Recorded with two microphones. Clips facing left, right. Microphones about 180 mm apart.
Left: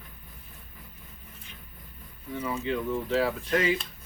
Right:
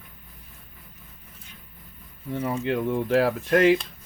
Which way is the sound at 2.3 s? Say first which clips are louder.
Right 4 dB; 55° right (ahead or behind).